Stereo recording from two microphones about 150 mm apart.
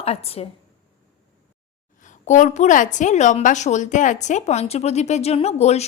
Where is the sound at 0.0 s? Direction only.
45° left (ahead or behind).